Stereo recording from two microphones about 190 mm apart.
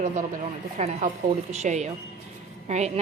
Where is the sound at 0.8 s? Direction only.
30° right (ahead or behind).